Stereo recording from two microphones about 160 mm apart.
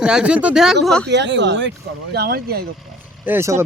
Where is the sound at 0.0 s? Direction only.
5° right (ahead or behind).